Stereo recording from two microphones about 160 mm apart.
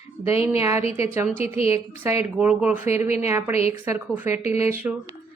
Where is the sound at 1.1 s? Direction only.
15° right (ahead or behind).